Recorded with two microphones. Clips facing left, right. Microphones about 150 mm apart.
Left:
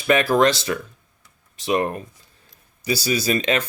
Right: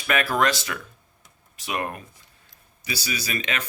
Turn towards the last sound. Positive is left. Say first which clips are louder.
# left 9 dB
turn(degrees=30)  # may be behind; listen again after turning